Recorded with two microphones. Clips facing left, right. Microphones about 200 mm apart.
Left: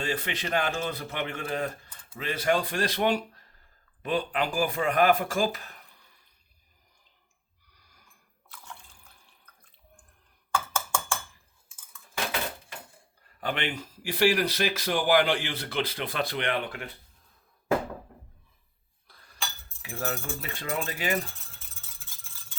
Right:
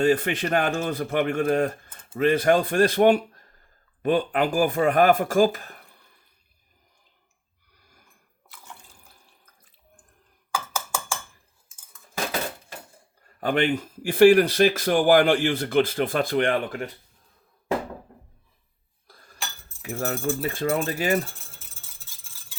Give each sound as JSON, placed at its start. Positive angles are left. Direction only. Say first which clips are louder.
{"t": 0.0, "sound": "speech", "louder": "right 10 dB", "side_deg": -50}
{"t": 7.8, "sound": "a sound", "louder": "right 5 dB", "side_deg": -50}
{"t": 10.5, "sound": "a sound", "louder": "even", "side_deg": -5}
{"t": 13.4, "sound": "speech", "louder": "right 9 dB", "side_deg": -45}
{"t": 19.0, "sound": "chink", "louder": "right 6 dB", "side_deg": -45}
{"t": 19.8, "sound": "speech", "louder": "right 6 dB", "side_deg": -45}